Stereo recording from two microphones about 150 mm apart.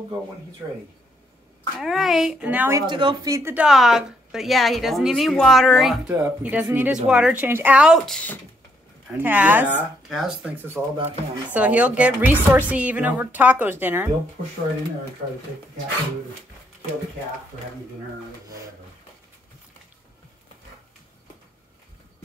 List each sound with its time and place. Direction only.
1.8 s a woman's voice: centre (ahead or behind)
2.9 s speech: 30° right (ahead or behind)
3.3 s a woman's voice: 15° right (ahead or behind)
3.6 s a woman's voice: 5° right (ahead or behind)
9.1 s a woman's voice: 10° right (ahead or behind)
10.0 s a woman's voice: centre (ahead or behind)